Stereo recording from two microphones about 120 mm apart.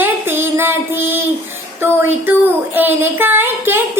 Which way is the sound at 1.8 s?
20° right (ahead or behind).